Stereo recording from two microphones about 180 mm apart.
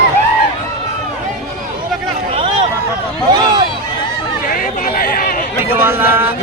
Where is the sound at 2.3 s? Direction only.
30° right (ahead or behind).